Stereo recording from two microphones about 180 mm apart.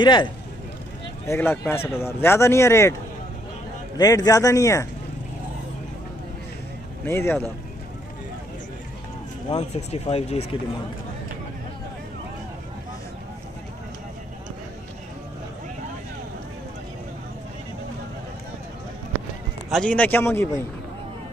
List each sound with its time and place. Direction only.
0.0 s a man's voice: 25° left (ahead or behind)
1.2 s speech: 15° left (ahead or behind)
4.0 s a man's voice: 20° left (ahead or behind)
7.1 s speech: 15° left (ahead or behind)
9.5 s speech: 35° left (ahead or behind)
19.7 s speech: 5° left (ahead or behind)